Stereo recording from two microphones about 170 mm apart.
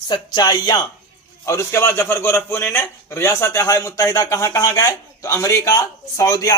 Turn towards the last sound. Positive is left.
turn(degrees=20)  # may be behind; listen again after turning